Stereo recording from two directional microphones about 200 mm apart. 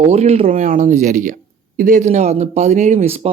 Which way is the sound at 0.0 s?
30° right (ahead or behind).